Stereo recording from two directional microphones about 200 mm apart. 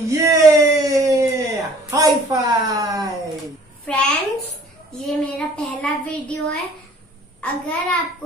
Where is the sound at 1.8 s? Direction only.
15° right (ahead or behind).